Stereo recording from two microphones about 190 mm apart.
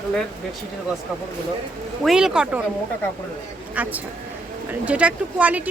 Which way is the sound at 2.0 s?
Centre (ahead or behind).